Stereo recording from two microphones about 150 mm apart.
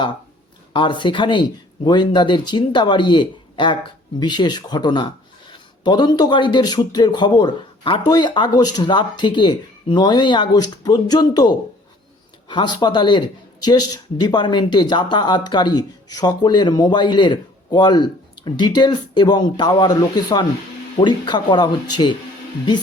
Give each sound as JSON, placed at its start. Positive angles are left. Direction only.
{"t": 0.7, "sound": "speech", "side_deg": 35}